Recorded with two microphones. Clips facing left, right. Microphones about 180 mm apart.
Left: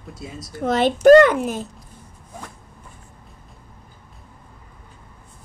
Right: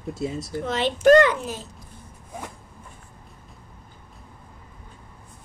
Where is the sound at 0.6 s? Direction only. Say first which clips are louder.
Left 5 dB; 45° left (ahead or behind).